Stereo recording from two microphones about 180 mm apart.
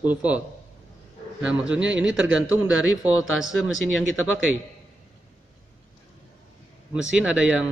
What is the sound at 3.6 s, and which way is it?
Speech, 90° right.